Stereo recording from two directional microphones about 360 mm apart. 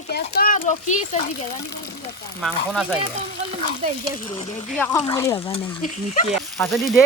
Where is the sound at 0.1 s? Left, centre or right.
Left.